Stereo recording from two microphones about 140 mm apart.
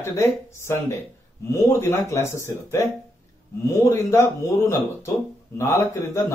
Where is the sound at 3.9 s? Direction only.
20° left (ahead or behind).